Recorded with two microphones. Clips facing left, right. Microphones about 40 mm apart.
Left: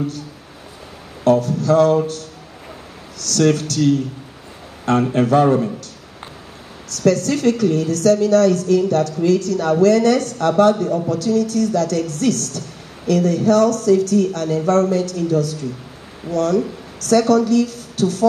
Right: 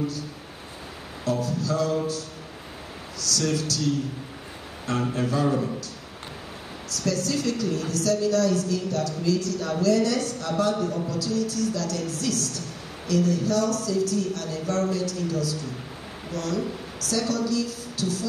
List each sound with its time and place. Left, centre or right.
1.2 s a man's voice: left
5.1 s a woman's voice: left
6.9 s a woman's voice: left